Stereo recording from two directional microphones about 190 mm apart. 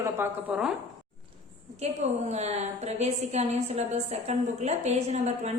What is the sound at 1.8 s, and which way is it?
A woman's voice, 35° right (ahead or behind).